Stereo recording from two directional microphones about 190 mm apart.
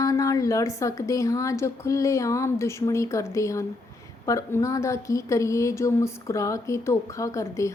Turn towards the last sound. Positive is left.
turn(degrees=15)  # may be behind; listen again after turning